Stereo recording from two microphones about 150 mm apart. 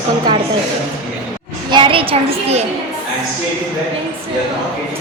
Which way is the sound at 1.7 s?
35° right (ahead or behind).